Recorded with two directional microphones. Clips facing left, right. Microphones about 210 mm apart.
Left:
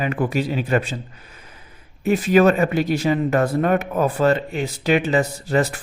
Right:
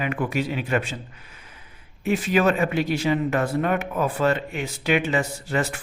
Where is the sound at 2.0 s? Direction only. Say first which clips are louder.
Left 5 dB; 40° left (ahead or behind).